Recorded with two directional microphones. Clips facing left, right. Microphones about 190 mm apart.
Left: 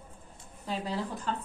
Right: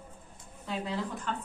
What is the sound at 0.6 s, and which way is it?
Speech, 35° left (ahead or behind).